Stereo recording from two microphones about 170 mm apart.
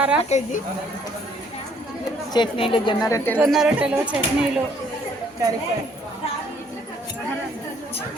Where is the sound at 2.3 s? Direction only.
30° left (ahead or behind).